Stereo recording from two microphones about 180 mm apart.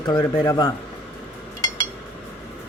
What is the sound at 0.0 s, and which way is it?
Speech, 20° left (ahead or behind).